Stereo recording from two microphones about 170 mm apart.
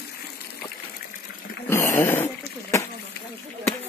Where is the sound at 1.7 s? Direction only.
15° left (ahead or behind).